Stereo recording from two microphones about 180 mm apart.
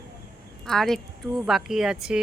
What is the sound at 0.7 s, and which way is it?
Speech, 5° left (ahead or behind).